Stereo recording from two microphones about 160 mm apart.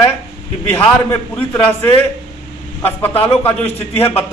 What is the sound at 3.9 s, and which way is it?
Speech, 10° left (ahead or behind).